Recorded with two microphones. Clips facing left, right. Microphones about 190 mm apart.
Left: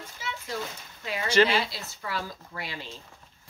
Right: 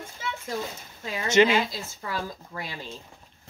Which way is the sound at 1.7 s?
45° right (ahead or behind).